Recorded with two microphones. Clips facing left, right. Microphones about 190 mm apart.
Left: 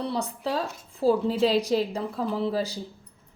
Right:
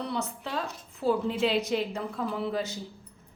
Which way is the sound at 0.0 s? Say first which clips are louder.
Left 4 dB; 35° left (ahead or behind).